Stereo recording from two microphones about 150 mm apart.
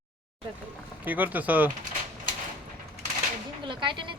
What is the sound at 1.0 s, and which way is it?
Speech, 10° right (ahead or behind).